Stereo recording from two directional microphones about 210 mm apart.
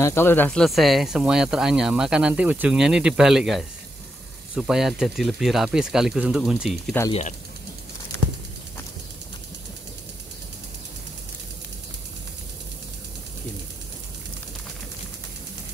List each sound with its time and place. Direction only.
0.0 s speech: 10° left (ahead or behind)
7.1 s speech: 30° left (ahead or behind)